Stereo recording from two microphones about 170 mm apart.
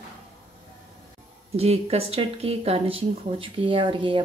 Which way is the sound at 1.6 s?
35° right (ahead or behind).